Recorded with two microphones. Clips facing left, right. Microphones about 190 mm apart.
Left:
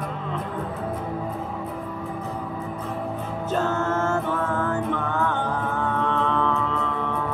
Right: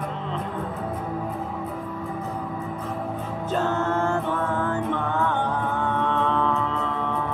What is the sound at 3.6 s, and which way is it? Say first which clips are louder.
Music: right 2 dB; 20° right (ahead or behind).